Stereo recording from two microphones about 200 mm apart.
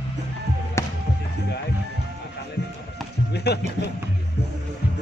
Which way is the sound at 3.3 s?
55° left (ahead or behind).